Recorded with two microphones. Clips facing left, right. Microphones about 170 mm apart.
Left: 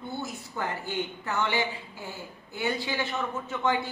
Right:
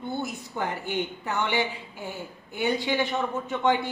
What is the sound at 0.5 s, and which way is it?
A woman's voice, 20° right (ahead or behind).